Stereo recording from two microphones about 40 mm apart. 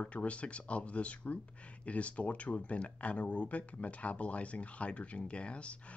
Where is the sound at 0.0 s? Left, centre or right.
Left.